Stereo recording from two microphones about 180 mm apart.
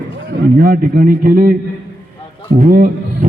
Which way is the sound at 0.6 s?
50° right (ahead or behind).